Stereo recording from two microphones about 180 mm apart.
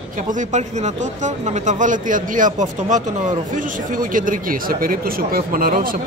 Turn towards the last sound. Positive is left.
turn(degrees=-55)  # may be behind; listen again after turning